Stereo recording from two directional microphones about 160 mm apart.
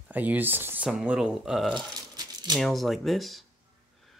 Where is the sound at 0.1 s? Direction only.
10° right (ahead or behind).